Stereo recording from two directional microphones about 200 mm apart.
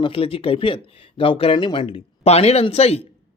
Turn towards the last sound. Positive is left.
turn(degrees=30)  # may be behind; listen again after turning